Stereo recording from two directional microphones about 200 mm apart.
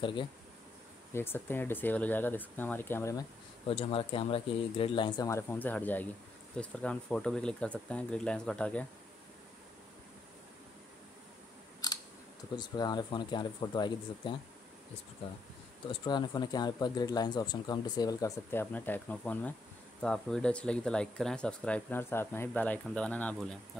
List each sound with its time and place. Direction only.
0.0 s speech: 25° left (ahead or behind)
1.1 s speech: 10° left (ahead or behind)
3.6 s speech: 30° left (ahead or behind); by 8.8 s 5° left (ahead or behind)
11.8 s scissors: 20° left (ahead or behind)
12.5 s speech: 20° left (ahead or behind)
15.9 s speech: 20° left (ahead or behind); by 23.6 s 5° left (ahead or behind)